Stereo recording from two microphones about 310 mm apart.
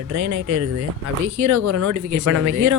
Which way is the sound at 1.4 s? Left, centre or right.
Right.